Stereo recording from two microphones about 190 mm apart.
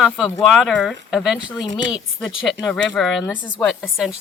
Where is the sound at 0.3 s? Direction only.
5° left (ahead or behind).